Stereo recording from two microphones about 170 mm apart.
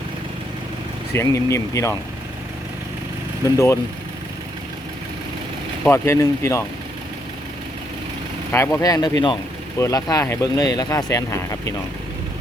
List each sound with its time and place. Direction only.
1.1 s speech: 15° left (ahead or behind)
3.4 s speech: 15° left (ahead or behind)
5.9 s speech: 15° left (ahead or behind)
8.5 s speech: 15° left (ahead or behind)